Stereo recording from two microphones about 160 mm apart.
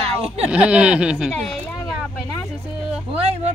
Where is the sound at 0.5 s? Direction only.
5° right (ahead or behind).